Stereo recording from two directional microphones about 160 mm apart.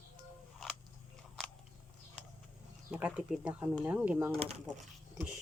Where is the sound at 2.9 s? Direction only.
5° right (ahead or behind).